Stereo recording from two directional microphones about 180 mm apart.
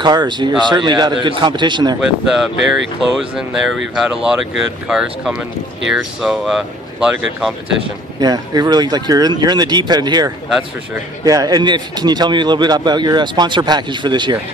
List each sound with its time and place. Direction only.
0.0 s speech: 25° right (ahead or behind)
2.0 s speech: 5° right (ahead or behind)
3.9 s speech: 5° right (ahead or behind)
8.2 s speech: 20° right (ahead or behind)